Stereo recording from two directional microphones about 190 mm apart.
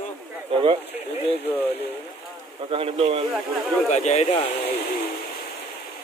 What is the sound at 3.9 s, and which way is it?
Speech, 35° left (ahead or behind).